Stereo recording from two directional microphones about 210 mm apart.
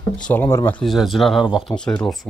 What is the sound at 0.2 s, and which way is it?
Speech, 10° left (ahead or behind).